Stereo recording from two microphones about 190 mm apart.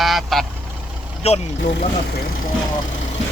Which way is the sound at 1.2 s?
35° left (ahead or behind).